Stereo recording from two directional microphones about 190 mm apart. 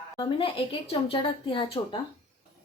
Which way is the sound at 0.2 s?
25° left (ahead or behind).